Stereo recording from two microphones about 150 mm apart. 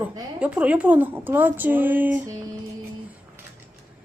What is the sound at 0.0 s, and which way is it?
A woman's voice, 10° right (ahead or behind).